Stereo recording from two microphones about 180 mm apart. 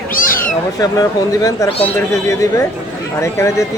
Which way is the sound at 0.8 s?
20° left (ahead or behind).